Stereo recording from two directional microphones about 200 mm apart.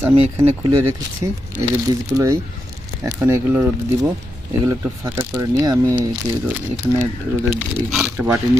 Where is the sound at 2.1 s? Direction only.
20° right (ahead or behind).